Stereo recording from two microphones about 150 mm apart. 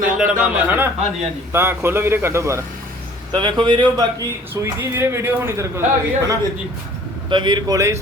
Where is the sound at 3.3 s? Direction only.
30° right (ahead or behind).